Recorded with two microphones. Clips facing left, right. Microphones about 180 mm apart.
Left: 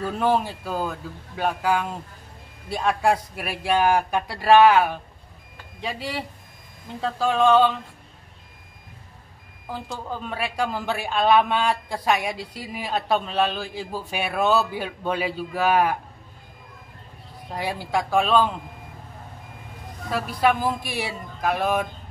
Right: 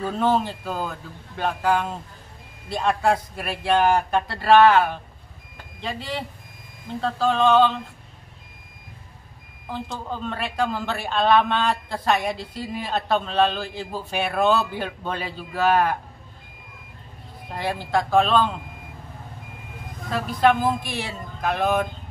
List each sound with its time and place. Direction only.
0.2 s a man's voice: 10° left (ahead or behind)
10.2 s a man's voice: 10° left (ahead or behind)
17.6 s a man's voice: 10° left (ahead or behind)
20.1 s a man's voice: 10° left (ahead or behind)